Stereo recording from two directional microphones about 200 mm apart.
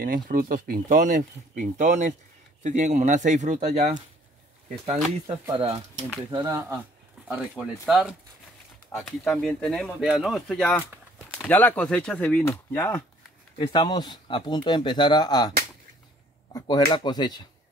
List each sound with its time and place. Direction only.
0.0 s speech: 45° right (ahead or behind)
5.5 s speech: 30° right (ahead or behind)
6.3 s speech: 15° right (ahead or behind)
7.2 s speech: centre (ahead or behind); by 15.5 s 20° left (ahead or behind)
16.5 s speech: 20° left (ahead or behind)